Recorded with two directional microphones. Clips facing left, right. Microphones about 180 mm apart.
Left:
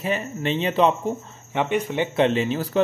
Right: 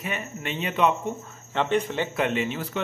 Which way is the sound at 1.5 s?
15° left (ahead or behind).